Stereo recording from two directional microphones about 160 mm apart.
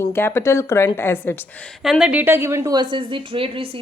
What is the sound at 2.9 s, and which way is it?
Speech, 35° right (ahead or behind).